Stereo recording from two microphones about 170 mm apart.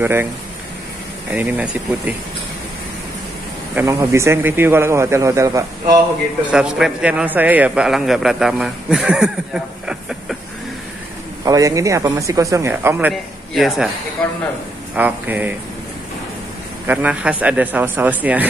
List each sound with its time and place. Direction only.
0.0 s a man's voice: 15° right (ahead or behind)
1.3 s a man's voice: 5° right (ahead or behind)
3.7 s a man's voice: 15° right (ahead or behind)
6.5 s a man's voice: 5° right (ahead or behind)
11.4 s speech: 20° right (ahead or behind)
13.1 s a man's voice: centre (ahead or behind)
15.0 s a man's voice: 10° right (ahead or behind)
16.8 s a man's voice: 10° right (ahead or behind)